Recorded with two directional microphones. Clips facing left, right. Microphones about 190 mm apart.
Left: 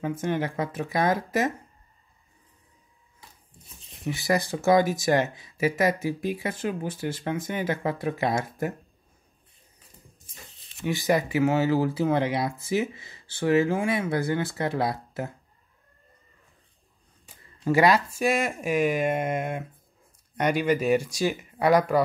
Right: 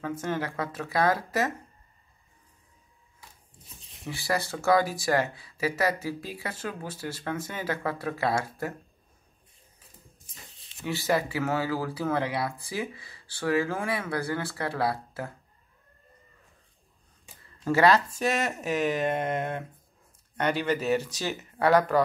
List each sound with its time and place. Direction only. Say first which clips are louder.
0.2 s speech: left 4 dB; 15° left (ahead or behind)
4.1 s speech: left 4 dB; 15° left (ahead or behind)
10.9 s speech: left 3 dB; 15° left (ahead or behind)
17.6 s speech: left 1 dB; 15° left (ahead or behind)